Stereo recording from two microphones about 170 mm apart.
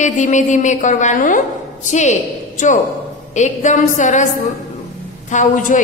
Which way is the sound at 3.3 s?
45° left (ahead or behind).